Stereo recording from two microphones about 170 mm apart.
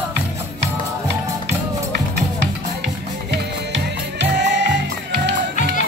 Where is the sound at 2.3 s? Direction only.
85° right.